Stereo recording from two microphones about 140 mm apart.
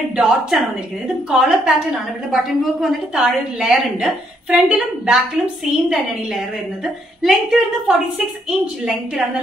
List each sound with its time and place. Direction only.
0.1 s a woman's voice: 5° right (ahead or behind)
7.2 s a woman's voice: centre (ahead or behind)